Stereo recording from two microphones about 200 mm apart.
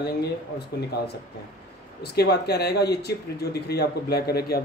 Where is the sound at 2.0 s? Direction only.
55° left (ahead or behind).